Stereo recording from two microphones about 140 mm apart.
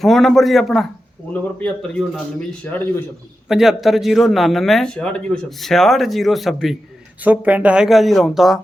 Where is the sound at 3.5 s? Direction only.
5° right (ahead or behind).